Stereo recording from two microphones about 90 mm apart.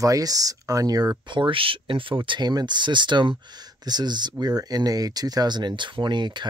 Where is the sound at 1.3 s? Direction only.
70° right (ahead or behind).